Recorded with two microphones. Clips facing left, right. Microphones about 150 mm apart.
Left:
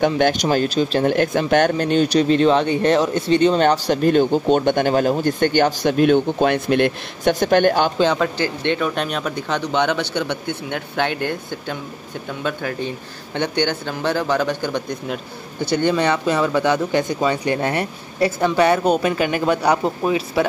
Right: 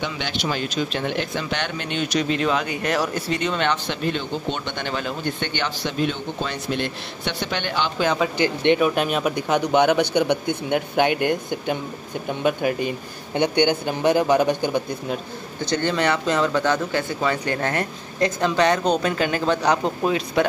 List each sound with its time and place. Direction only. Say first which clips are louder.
0.0 s speech: left 10 dB; 45° left (ahead or behind)
8.1 s speech: left 1 dB; 15° right (ahead or behind)
15.6 s speech: left 4 dB; 10° left (ahead or behind)